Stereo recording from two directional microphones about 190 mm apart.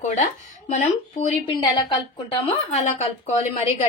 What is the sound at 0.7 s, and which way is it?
A woman's voice, 35° left (ahead or behind).